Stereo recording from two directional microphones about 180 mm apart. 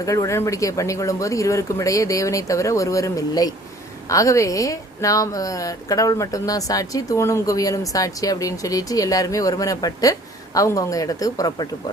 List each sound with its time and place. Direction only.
0.0 s speech: 20° left (ahead or behind)